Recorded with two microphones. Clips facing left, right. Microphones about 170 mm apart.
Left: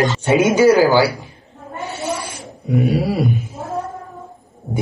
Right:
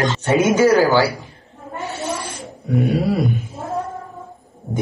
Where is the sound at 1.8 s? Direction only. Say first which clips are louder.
Left 1 dB; 10° left (ahead or behind).